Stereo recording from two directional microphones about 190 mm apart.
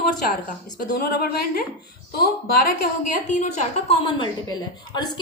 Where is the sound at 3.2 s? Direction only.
40° left (ahead or behind).